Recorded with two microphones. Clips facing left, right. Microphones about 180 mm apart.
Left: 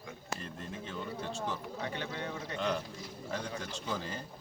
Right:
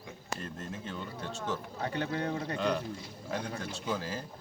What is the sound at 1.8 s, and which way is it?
Speech, 40° right (ahead or behind).